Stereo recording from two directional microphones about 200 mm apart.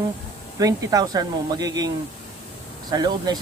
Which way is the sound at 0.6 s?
15° right (ahead or behind).